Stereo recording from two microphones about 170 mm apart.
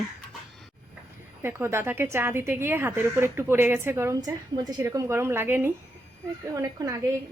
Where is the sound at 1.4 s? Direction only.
15° right (ahead or behind).